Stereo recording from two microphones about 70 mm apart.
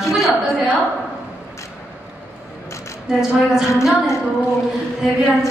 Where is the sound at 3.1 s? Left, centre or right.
Centre.